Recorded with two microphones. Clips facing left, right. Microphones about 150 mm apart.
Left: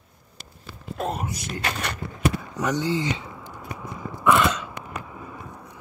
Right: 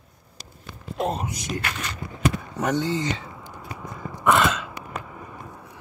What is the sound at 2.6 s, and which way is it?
Speech, 50° right (ahead or behind).